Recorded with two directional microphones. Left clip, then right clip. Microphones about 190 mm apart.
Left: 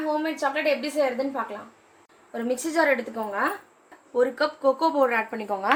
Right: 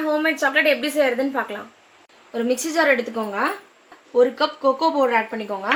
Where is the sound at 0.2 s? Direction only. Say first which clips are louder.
Right 7 dB; 45° right (ahead or behind).